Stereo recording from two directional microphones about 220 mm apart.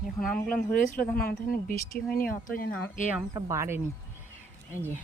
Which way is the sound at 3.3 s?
15° right (ahead or behind).